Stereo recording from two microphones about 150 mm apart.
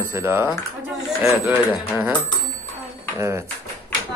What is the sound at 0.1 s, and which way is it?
Speech, 15° right (ahead or behind).